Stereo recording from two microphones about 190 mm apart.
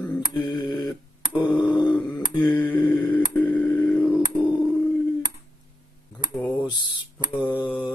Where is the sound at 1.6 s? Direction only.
25° left (ahead or behind).